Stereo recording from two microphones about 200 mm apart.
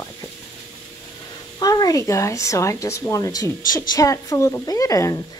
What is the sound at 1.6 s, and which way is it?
Speech, 20° left (ahead or behind).